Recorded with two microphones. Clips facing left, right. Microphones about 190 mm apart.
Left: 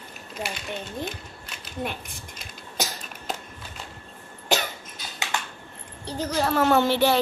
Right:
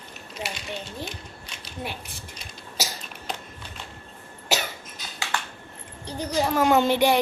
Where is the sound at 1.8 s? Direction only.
50° left (ahead or behind).